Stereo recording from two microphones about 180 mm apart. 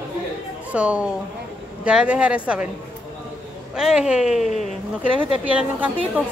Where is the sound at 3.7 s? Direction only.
5° right (ahead or behind).